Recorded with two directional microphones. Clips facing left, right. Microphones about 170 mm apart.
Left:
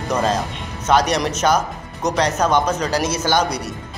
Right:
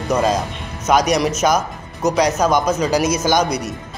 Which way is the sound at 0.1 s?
10° right (ahead or behind).